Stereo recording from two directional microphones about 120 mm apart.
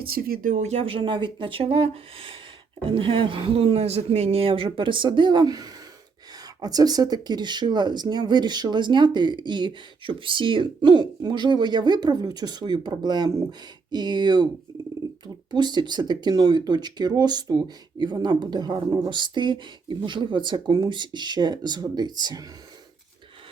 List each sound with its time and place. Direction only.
0.4 s speech: 80° right; by 14.4 s 35° right (ahead or behind)
15.5 s speech: 35° right (ahead or behind)